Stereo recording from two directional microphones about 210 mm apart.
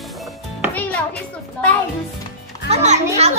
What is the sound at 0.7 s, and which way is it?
Music, 5° left (ahead or behind).